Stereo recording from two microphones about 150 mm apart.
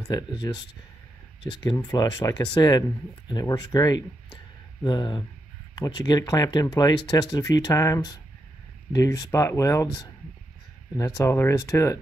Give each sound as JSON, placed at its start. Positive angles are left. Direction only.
{"t": 0.0, "sound": "speech", "side_deg": 25}
{"t": 11.0, "sound": "speech", "side_deg": 20}